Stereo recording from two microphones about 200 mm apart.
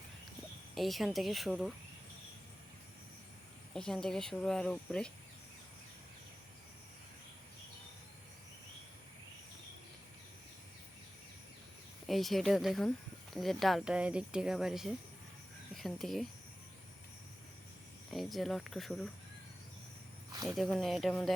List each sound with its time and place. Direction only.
0.8 s speech: centre (ahead or behind)
3.8 s speech: 5° left (ahead or behind)
12.0 s speech: centre (ahead or behind)
18.1 s speech: centre (ahead or behind)
20.3 s speech: 20° right (ahead or behind)
20.6 s speech: centre (ahead or behind)